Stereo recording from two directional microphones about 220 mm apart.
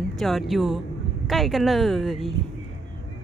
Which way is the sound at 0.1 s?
Centre (ahead or behind).